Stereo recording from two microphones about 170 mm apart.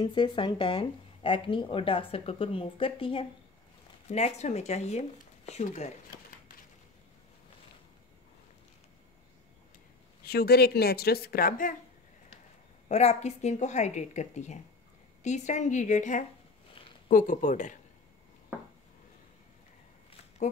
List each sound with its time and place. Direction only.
0.0 s speech: 25° left (ahead or behind)
10.2 s a woman's voice: 65° left (ahead or behind)
12.8 s a woman's voice: 40° left (ahead or behind)